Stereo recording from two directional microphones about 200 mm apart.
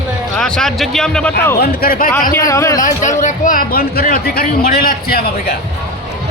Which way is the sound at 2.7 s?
40° left (ahead or behind).